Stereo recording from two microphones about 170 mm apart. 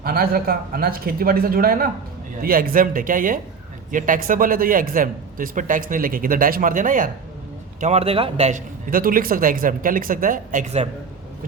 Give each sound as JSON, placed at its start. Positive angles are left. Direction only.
{"t": 0.0, "sound": "speech", "side_deg": -60}
{"t": 7.8, "sound": "a man's voice", "side_deg": -40}